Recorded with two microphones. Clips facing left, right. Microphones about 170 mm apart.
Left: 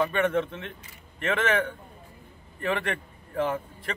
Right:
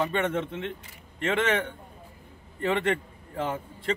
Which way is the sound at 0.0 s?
25° right (ahead or behind).